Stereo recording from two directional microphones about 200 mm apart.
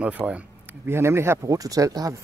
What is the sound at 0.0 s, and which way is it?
Speech, 5° right (ahead or behind).